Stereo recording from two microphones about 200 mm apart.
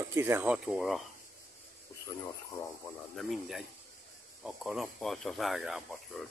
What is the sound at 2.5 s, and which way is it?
Speech, 20° left (ahead or behind).